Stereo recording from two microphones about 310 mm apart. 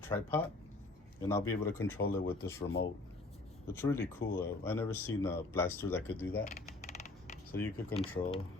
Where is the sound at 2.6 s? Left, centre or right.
Left.